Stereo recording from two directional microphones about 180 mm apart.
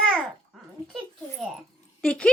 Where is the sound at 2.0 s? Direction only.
5° left (ahead or behind).